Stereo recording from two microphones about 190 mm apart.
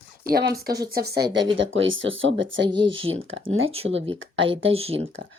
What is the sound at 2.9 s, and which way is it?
Speech, 90° right.